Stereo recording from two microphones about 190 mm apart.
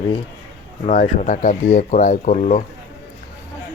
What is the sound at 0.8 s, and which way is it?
Speech, 45° left (ahead or behind).